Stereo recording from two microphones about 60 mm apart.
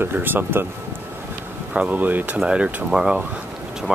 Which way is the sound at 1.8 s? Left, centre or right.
Right.